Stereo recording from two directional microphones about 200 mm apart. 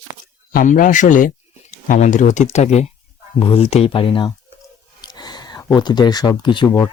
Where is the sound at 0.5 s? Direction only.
40° left (ahead or behind).